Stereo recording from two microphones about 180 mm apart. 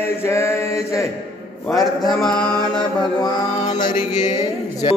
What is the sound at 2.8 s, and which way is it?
Mantra, 25° left (ahead or behind).